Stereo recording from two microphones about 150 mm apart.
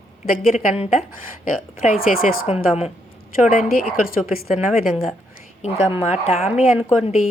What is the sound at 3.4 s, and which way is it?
A woman's voice, 65° left (ahead or behind).